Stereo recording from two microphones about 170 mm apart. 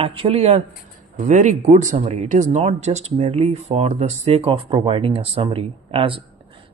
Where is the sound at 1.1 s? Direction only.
45° right (ahead or behind).